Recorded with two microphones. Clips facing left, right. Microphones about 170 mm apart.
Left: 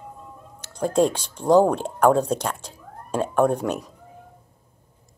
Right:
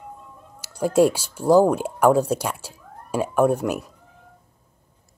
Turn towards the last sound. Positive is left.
turn(degrees=-5)  # may be behind; listen again after turning